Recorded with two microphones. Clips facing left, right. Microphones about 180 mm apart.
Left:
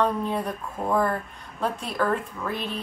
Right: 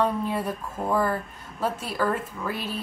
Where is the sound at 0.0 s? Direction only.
5° right (ahead or behind).